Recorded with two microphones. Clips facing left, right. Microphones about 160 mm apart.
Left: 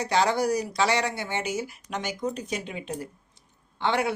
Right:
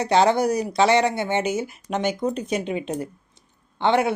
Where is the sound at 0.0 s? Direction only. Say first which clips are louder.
Right 5 dB; 25° right (ahead or behind).